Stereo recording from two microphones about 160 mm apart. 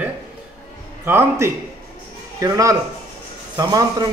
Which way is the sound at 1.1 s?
15° right (ahead or behind).